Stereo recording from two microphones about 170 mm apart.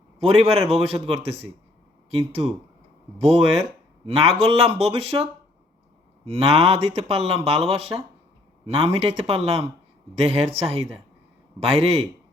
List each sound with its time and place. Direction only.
0.2 s speech: 35° right (ahead or behind)